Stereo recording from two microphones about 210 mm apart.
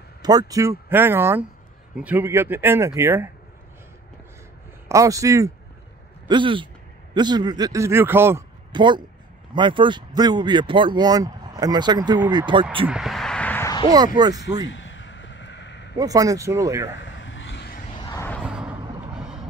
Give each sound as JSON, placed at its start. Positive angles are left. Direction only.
{"t": 0.2, "sound": "a man's voice", "side_deg": -20}
{"t": 4.8, "sound": "a man's voice", "side_deg": -15}
{"t": 8.7, "sound": "speech", "side_deg": -20}
{"t": 12.8, "sound": "a sound", "side_deg": 0}
{"t": 13.9, "sound": "speech", "side_deg": -20}
{"t": 14.7, "sound": "a sound", "side_deg": 60}
{"t": 16.0, "sound": "a man's voice", "side_deg": -15}
{"t": 17.0, "sound": "vehicle", "side_deg": 60}
{"t": 18.0, "sound": "vehicle", "side_deg": 15}
{"t": 18.4, "sound": "vehicle", "side_deg": -5}
{"t": 19.1, "sound": "music", "side_deg": -5}